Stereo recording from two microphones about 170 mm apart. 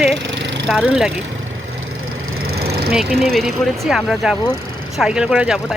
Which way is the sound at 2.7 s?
65° right (ahead or behind).